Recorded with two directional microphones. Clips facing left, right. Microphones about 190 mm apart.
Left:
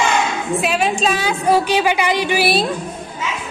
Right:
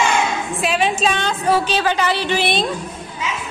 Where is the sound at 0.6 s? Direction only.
Centre (ahead or behind).